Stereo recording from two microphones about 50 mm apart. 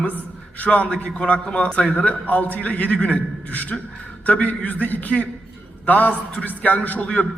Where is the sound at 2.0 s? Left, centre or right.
Left.